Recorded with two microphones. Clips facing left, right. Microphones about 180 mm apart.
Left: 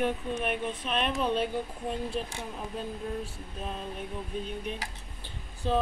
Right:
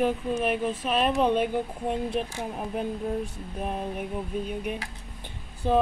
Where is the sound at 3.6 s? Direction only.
60° right (ahead or behind).